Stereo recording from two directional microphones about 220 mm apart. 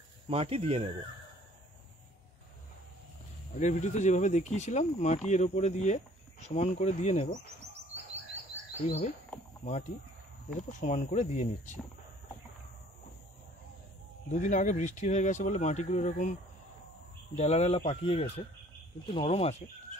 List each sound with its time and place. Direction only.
0.3 s speech: 25° right (ahead or behind)
3.5 s speech: 35° left (ahead or behind)
8.8 s speech: 30° left (ahead or behind)
10.7 s speech: 35° left (ahead or behind)
14.3 s speech: 35° left (ahead or behind)
17.4 s speech: 30° left (ahead or behind)